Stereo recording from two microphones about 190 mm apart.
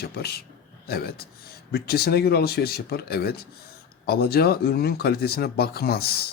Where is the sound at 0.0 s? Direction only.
55° left (ahead or behind).